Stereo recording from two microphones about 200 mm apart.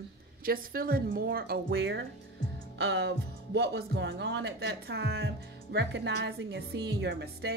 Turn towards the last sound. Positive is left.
turn(degrees=-55)  # may be behind; listen again after turning